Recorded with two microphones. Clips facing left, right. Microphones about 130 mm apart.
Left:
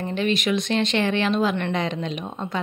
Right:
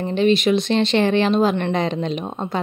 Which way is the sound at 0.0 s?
30° right (ahead or behind).